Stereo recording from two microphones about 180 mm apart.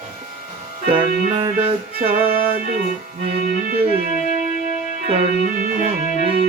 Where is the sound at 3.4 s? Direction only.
55° right (ahead or behind).